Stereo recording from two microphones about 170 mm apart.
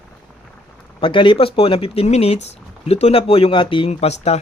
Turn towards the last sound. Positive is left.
turn(degrees=35)  # may be behind; listen again after turning